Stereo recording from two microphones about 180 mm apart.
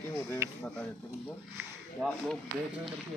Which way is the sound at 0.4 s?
15° right (ahead or behind).